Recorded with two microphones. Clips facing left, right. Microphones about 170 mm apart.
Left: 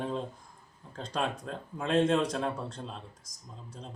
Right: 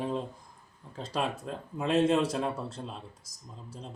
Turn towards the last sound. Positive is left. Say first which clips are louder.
# right 2 dB
turn(degrees=-5)  # may be behind; listen again after turning